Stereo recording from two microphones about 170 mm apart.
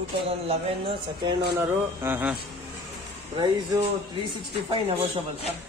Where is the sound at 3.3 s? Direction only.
25° right (ahead or behind).